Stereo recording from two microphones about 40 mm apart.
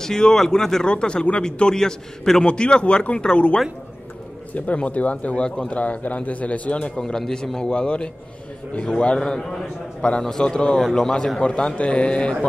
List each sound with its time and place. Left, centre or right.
0.0 s a man's voice: centre
0.8 s a man's voice: left
2.4 s a man's voice: left
4.7 s speech: left
7.0 s a man's voice: centre